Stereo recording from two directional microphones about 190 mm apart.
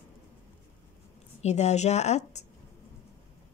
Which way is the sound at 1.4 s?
35° left (ahead or behind).